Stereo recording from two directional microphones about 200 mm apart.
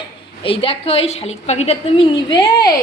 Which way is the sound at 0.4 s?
30° left (ahead or behind).